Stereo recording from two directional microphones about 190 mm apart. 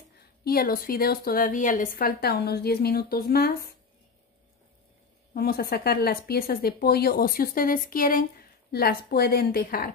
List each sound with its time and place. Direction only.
0.4 s speech: 55° left (ahead or behind)
5.3 s speech: 55° left (ahead or behind)